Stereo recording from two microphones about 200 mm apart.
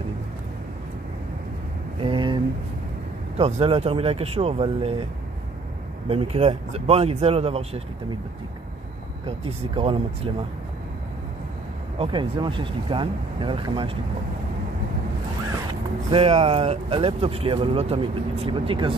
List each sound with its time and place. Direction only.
2.0 s a sound: 25° right (ahead or behind)
3.3 s speech: 30° right (ahead or behind)
6.0 s speech: 30° right (ahead or behind)
9.8 s speech: 25° right (ahead or behind)
12.0 s speech: 25° right (ahead or behind)
16.1 s speech: 30° right (ahead or behind)